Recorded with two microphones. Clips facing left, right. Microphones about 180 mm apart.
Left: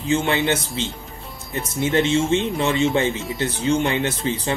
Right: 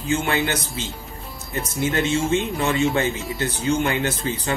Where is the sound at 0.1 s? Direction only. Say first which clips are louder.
Left 2 dB; 25° left (ahead or behind).